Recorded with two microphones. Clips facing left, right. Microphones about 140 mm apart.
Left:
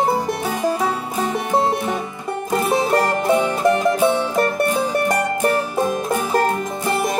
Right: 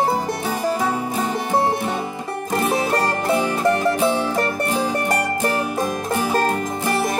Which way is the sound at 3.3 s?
20° left (ahead or behind).